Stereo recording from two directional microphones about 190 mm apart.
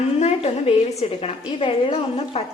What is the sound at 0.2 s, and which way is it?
A woman's voice, 35° left (ahead or behind).